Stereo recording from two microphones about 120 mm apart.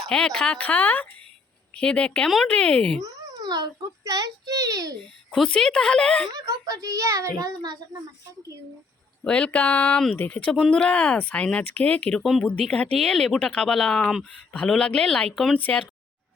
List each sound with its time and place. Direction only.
0.1 s speech: 5° left (ahead or behind)
3.0 s a child's voice: 35° right (ahead or behind)
5.3 s speech: 5° left (ahead or behind)
6.3 s a child's voice: 30° right (ahead or behind)
9.2 s a woman's voice: 10° left (ahead or behind)